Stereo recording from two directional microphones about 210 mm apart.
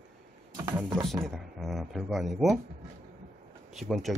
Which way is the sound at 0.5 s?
15° right (ahead or behind).